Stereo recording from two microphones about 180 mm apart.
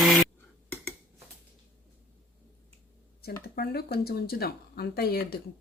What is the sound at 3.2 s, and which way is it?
Speech, 60° left (ahead or behind).